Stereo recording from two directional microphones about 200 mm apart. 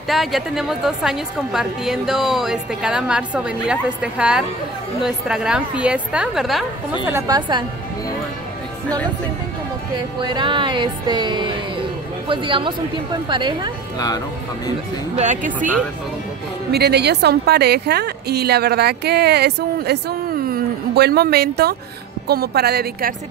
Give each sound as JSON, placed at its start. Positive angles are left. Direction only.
{"t": 0.1, "sound": "a woman's voice", "side_deg": 0}
{"t": 7.1, "sound": "music", "side_deg": -15}
{"t": 9.9, "sound": "music", "side_deg": -25}
{"t": 13.9, "sound": "speech", "side_deg": 20}
{"t": 15.1, "sound": "a woman's voice", "side_deg": -40}
{"t": 16.7, "sound": "a woman's voice", "side_deg": -55}